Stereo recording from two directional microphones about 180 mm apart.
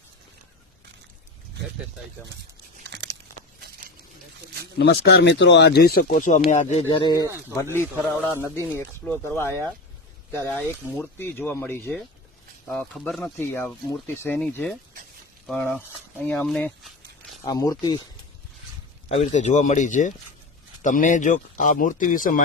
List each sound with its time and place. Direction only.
2.8 s crunch: 70° right (ahead or behind)
3.6 s a sound: 55° right (ahead or behind)
4.8 s speech: 65° left (ahead or behind); by 11.9 s 10° left (ahead or behind)
12.7 s speech: centre (ahead or behind)
17.4 s speech: 20° left (ahead or behind)
19.0 s speech: 40° left (ahead or behind)